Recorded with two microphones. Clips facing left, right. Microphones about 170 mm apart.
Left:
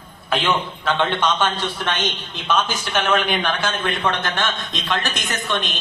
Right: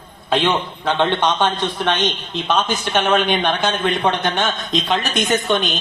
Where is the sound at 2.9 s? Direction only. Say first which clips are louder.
Right 2 dB; 15° right (ahead or behind).